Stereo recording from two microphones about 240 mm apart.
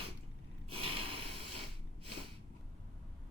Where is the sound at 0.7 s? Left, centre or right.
Right.